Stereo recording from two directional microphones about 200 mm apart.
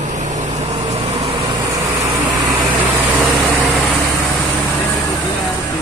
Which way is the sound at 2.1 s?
20° right (ahead or behind).